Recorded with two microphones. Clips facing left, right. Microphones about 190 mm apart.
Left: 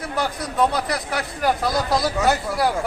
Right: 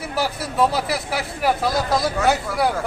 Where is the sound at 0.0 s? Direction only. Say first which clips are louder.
Right 1 dB; 5° right (ahead or behind).